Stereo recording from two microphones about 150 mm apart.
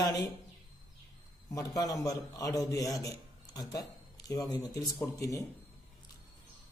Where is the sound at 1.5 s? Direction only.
20° left (ahead or behind).